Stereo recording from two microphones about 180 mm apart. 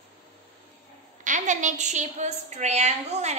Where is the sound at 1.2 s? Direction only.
45° right (ahead or behind).